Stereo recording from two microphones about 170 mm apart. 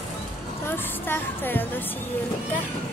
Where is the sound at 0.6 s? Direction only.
10° left (ahead or behind).